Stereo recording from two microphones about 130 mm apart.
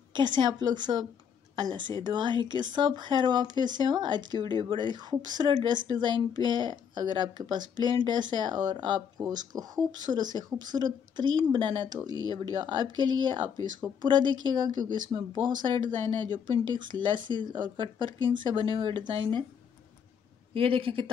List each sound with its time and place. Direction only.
0.1 s speech: 35° right (ahead or behind)
20.5 s speech: 45° right (ahead or behind)